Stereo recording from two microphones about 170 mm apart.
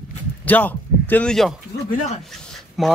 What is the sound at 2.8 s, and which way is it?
Speech, centre (ahead or behind).